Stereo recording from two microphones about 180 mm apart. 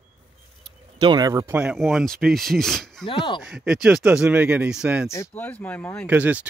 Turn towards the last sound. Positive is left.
turn(degrees=-10)  # may be behind; listen again after turning